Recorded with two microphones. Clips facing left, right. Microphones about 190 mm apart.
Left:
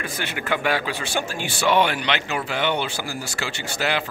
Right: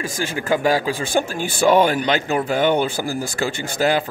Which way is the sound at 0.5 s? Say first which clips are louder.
Right 5 dB; 40° right (ahead or behind).